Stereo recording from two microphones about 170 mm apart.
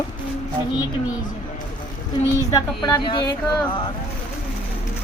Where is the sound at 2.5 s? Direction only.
20° left (ahead or behind).